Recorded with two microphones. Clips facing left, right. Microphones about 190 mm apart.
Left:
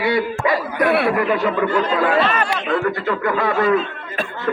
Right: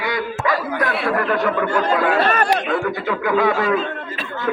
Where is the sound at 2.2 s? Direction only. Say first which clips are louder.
Right 3 dB; 40° right (ahead or behind).